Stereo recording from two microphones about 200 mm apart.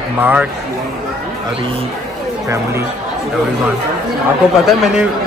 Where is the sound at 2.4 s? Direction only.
15° right (ahead or behind).